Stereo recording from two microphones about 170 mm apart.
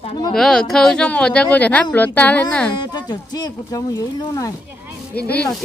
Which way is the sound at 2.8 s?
25° left (ahead or behind).